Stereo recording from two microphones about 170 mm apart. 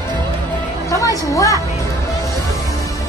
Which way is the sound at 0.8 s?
20° left (ahead or behind).